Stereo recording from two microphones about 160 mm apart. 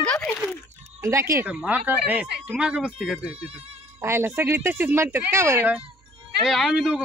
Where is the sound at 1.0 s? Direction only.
20° right (ahead or behind).